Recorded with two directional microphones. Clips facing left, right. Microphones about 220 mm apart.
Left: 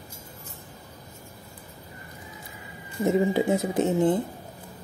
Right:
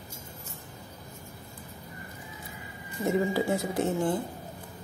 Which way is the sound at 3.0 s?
20° left (ahead or behind).